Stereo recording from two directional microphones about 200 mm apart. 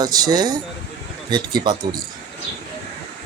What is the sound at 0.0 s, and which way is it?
Speech, 20° right (ahead or behind).